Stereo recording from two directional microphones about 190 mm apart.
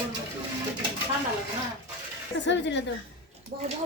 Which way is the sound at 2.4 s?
70° left (ahead or behind).